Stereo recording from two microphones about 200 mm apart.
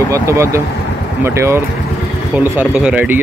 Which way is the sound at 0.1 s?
15° right (ahead or behind).